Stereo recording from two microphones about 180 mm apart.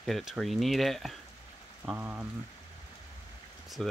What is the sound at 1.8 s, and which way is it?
Rain on surface, 10° right (ahead or behind).